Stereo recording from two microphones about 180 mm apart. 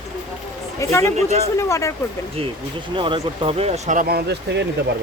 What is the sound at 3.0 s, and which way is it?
Speech, 30° right (ahead or behind).